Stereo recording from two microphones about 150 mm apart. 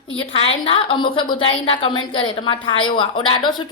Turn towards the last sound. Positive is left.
turn(degrees=30)  # may be behind; listen again after turning